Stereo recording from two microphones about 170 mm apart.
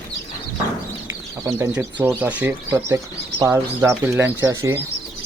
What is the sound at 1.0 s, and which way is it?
Speech, 15° right (ahead or behind).